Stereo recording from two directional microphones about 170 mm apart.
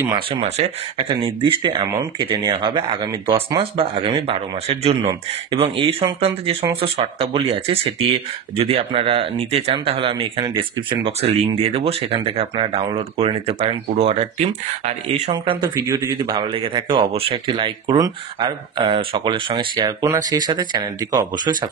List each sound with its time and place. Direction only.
0.0 s speech: 25° right (ahead or behind)
0.4 s a man's voice: 40° right (ahead or behind)
15.3 s speech: 25° right (ahead or behind)